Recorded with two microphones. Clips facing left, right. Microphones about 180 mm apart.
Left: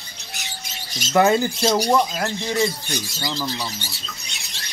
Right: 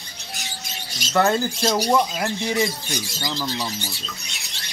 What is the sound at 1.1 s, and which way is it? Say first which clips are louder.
Speech: left 3 dB; 10° left (ahead or behind).